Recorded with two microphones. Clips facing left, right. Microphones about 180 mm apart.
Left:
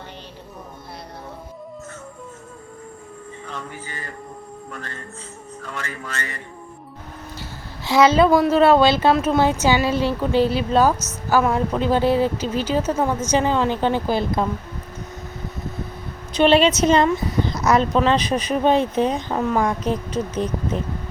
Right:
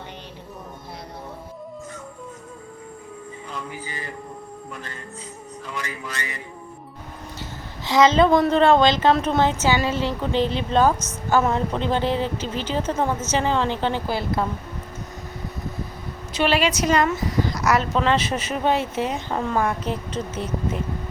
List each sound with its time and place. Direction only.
3.7 s speech: 10° right (ahead or behind)
5.7 s speech: 10° right (ahead or behind)
7.9 s speech: 10° left (ahead or behind)
16.4 s a woman's voice: 25° left (ahead or behind)
17.1 s a sound: 20° left (ahead or behind)
17.7 s speech: 20° left (ahead or behind)
19.3 s speech: 5° left (ahead or behind)